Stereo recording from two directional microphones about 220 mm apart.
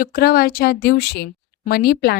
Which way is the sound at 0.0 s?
40° left (ahead or behind).